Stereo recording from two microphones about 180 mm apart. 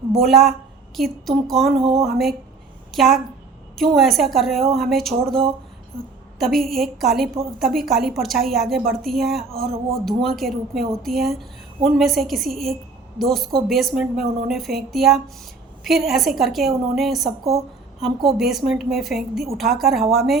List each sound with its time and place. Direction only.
0.1 s a woman's voice: centre (ahead or behind)
6.4 s a woman's voice: centre (ahead or behind)